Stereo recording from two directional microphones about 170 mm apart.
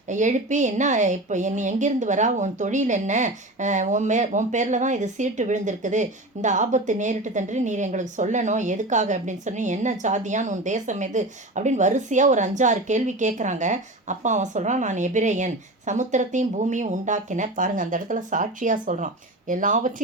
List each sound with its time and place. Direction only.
0.1 s a woman's voice: 45° right (ahead or behind)